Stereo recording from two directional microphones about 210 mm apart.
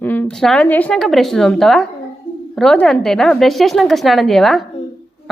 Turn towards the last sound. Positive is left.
turn(degrees=0)  # may be behind; listen again after turning